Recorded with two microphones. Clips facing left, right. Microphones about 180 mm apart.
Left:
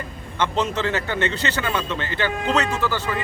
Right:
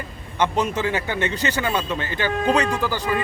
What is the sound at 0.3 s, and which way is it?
A man's voice, 15° right (ahead or behind).